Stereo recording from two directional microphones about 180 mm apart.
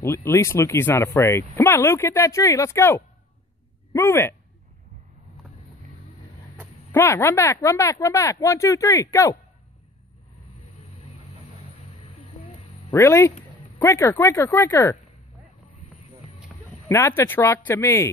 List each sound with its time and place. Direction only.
0.0 s speech: 15° left (ahead or behind)
6.9 s speech: 15° left (ahead or behind)
12.1 s music: 40° left (ahead or behind)
12.9 s speech: 15° left (ahead or behind)
16.9 s speech: 15° left (ahead or behind)